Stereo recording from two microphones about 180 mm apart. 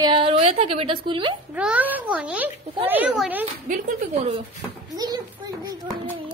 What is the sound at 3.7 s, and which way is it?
Speech, 45° right (ahead or behind).